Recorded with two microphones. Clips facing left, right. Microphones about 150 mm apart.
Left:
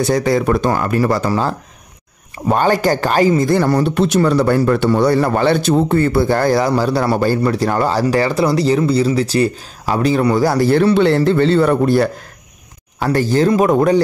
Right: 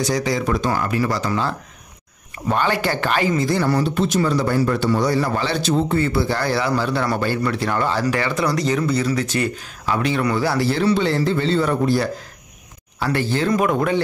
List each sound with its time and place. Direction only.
0.0 s speech: 55° left (ahead or behind); by 3.4 s 40° left (ahead or behind)
3.4 s speech: 50° left (ahead or behind)
3.9 s a man's voice: 70° left (ahead or behind)
13.1 s speech: 40° left (ahead or behind)